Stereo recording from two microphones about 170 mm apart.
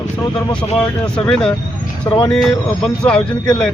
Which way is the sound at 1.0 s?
5° left (ahead or behind).